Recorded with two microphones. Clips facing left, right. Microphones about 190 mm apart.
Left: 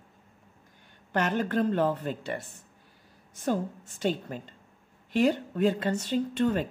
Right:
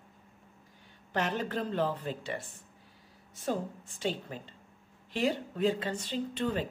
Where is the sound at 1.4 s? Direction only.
55° left (ahead or behind).